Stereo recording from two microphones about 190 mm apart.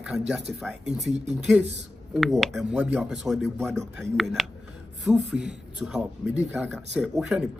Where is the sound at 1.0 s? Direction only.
35° right (ahead or behind).